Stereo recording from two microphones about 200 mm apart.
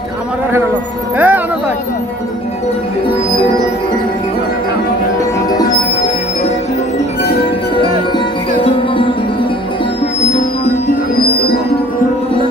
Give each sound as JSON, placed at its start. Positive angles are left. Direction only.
{"t": 1.1, "sound": "music", "side_deg": -10}
{"t": 8.5, "sound": "music", "side_deg": 25}